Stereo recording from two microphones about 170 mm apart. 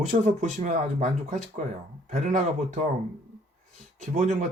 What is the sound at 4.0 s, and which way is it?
Speech, 50° right (ahead or behind).